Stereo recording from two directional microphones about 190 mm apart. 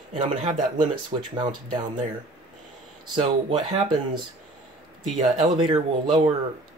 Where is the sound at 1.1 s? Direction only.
30° right (ahead or behind).